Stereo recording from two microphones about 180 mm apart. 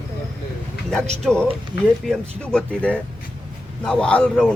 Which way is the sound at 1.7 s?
90° left.